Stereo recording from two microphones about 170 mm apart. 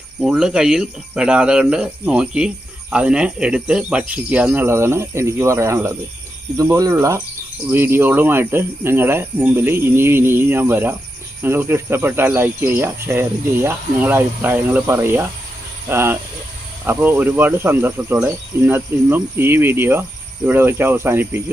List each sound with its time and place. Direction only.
0.2 s speech: 5° right (ahead or behind)